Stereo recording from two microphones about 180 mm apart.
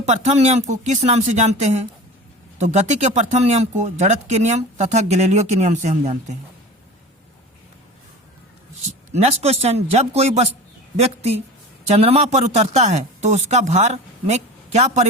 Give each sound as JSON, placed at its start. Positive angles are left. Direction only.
{"t": 0.0, "sound": "speech", "side_deg": -40}
{"t": 9.1, "sound": "speech", "side_deg": -35}